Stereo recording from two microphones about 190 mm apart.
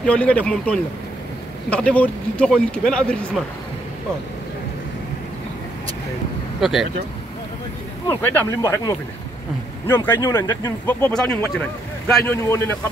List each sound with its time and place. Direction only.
0.0 s speech: 5° left (ahead or behind)
6.6 s speech: centre (ahead or behind)
8.1 s speech: 10° left (ahead or behind)